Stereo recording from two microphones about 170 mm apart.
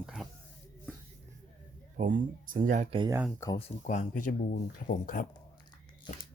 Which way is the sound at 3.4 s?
15° left (ahead or behind).